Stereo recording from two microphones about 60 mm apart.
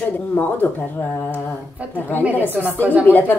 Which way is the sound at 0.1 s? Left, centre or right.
Left.